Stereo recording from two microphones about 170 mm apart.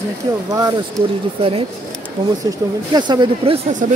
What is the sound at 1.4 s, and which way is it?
Speech, 35° right (ahead or behind).